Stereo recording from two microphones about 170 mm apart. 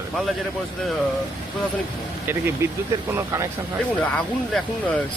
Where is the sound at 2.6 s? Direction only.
15° right (ahead or behind).